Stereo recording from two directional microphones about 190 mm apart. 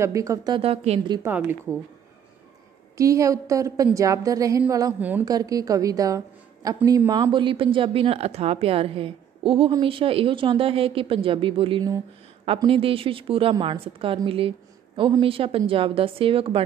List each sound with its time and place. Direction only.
0.0 s a woman's voice: 15° right (ahead or behind)
1.2 s a woman's voice: 10° right (ahead or behind)
3.0 s a woman's voice: 15° right (ahead or behind)